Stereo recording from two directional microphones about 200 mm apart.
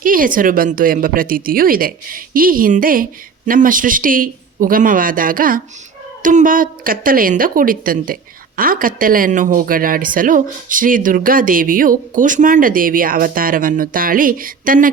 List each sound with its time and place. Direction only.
0.0 s a woman's voice: 45° right (ahead or behind)